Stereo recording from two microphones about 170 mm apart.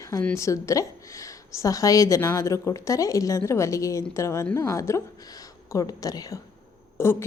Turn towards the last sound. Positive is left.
turn(degrees=15)  # may be behind; listen again after turning